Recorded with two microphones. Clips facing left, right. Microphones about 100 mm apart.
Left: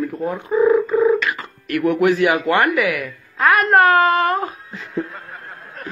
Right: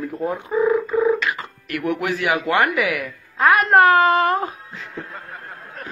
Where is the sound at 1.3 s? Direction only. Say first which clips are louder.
Left 3 dB; 15° right (ahead or behind).